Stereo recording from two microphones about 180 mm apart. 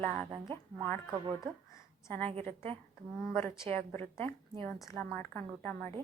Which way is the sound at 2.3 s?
35° right (ahead or behind).